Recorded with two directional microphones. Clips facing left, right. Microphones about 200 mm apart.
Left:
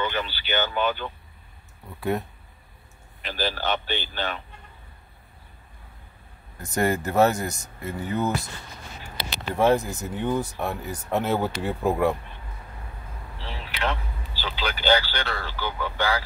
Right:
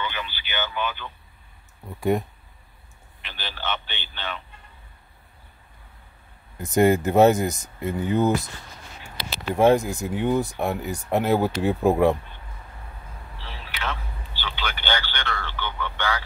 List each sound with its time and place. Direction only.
0.0 s a sound: 45° left (ahead or behind)
3.2 s speech: 40° left (ahead or behind)
6.6 s speech: 20° right (ahead or behind)
9.3 s speech: 10° right (ahead or behind)
14.4 s speech: 35° left (ahead or behind)